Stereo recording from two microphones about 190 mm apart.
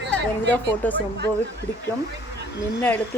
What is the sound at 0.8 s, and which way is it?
Speech, 10° left (ahead or behind).